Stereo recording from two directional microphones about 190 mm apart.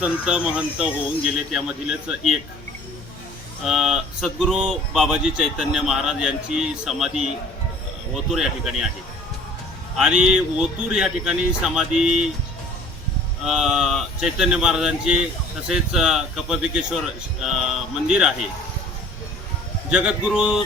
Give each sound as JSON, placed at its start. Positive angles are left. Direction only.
{"t": 0.0, "sound": "speech", "side_deg": -5}
{"t": 3.6, "sound": "speech", "side_deg": -5}
{"t": 10.0, "sound": "speech", "side_deg": -5}
{"t": 13.4, "sound": "speech", "side_deg": 0}
{"t": 19.9, "sound": "speech", "side_deg": -5}